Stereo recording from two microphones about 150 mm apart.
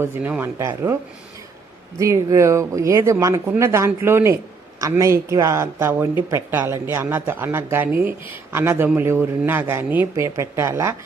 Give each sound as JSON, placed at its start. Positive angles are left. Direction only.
{"t": 0.0, "sound": "speech", "side_deg": -15}
{"t": 2.0, "sound": "speech", "side_deg": -20}